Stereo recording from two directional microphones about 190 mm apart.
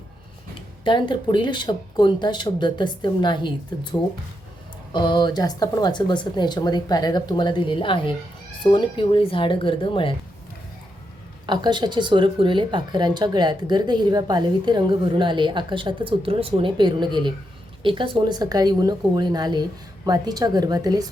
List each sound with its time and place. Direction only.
0.9 s speech: 25° left (ahead or behind)
11.4 s speech: 25° right (ahead or behind)